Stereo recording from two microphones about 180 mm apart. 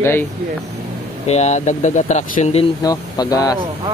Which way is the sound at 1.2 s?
40° left (ahead or behind).